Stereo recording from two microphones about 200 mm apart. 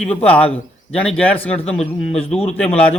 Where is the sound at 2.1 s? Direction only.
30° left (ahead or behind).